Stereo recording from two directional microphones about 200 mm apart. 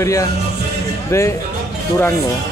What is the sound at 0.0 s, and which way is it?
Music, 15° left (ahead or behind).